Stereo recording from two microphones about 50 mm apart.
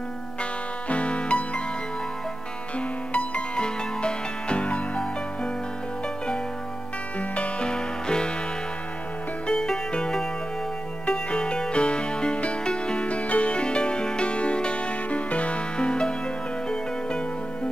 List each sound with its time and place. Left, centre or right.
0.4 s music: left
3.1 s music: left
7.2 s music: left
9.5 s music: centre